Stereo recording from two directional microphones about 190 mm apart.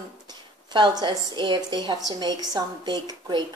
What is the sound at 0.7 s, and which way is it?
A woman's voice, 25° right (ahead or behind).